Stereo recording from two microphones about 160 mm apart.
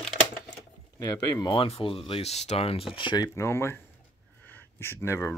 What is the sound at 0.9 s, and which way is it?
Speech, 20° left (ahead or behind).